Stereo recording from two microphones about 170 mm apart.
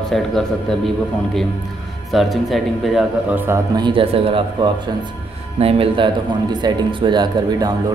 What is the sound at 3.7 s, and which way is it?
Speech, 30° right (ahead or behind).